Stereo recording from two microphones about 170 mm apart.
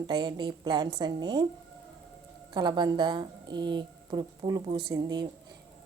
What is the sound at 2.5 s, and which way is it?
Speech, 25° right (ahead or behind).